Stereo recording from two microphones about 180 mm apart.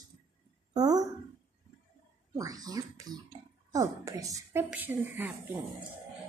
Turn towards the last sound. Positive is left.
turn(degrees=-10)  # may be behind; listen again after turning